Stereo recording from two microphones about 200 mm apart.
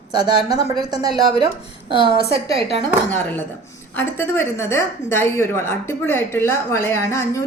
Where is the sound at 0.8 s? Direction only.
20° right (ahead or behind).